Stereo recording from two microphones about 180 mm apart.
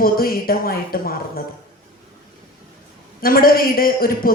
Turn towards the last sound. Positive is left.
turn(degrees=55)  # may be behind; listen again after turning